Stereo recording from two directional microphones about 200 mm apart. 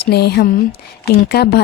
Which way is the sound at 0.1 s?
55° left (ahead or behind).